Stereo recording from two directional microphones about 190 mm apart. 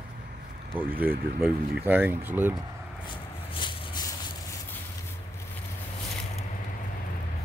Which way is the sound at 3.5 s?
25° left (ahead or behind).